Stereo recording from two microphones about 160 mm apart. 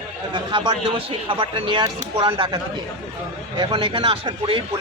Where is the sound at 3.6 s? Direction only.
35° right (ahead or behind).